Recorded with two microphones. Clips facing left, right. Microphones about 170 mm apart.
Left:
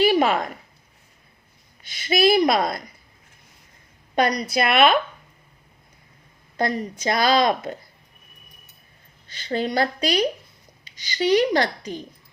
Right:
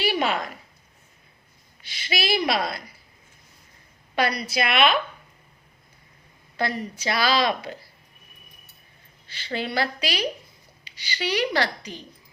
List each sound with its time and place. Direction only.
0.0 s a sound: 50° left (ahead or behind)
1.8 s a woman's voice: 50° left (ahead or behind)
4.1 s a woman's voice: 40° left (ahead or behind)
6.6 s a woman's voice: 45° left (ahead or behind)
9.3 s a woman's voice: 45° left (ahead or behind)